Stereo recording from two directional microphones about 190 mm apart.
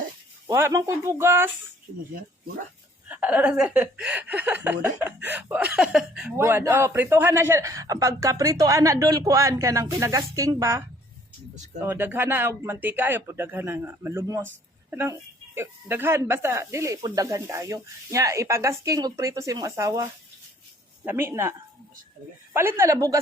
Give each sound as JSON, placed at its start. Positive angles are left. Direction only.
{"t": 0.4, "sound": "speech", "side_deg": -15}
{"t": 3.1, "sound": "speech", "side_deg": -5}
{"t": 6.3, "sound": "speech", "side_deg": -15}
{"t": 22.5, "sound": "speech", "side_deg": -15}